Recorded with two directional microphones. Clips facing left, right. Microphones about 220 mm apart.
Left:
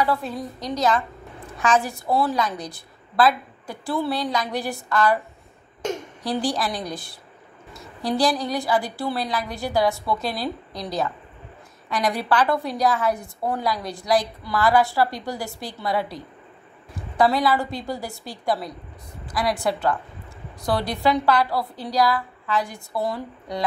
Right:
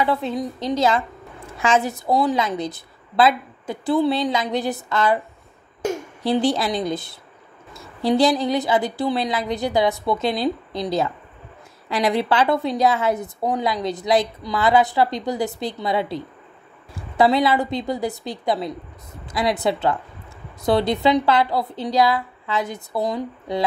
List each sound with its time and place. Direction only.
0.0 s a woman's voice: 20° right (ahead or behind)
5.8 s a sound: 5° right (ahead or behind)
6.2 s a woman's voice: 25° right (ahead or behind)